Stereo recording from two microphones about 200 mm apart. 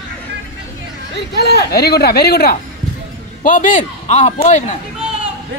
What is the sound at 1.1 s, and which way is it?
A man's voice, 55° left (ahead or behind).